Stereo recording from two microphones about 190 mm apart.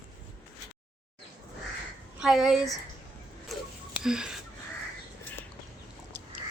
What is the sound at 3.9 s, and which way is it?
Wheeze, 5° right (ahead or behind).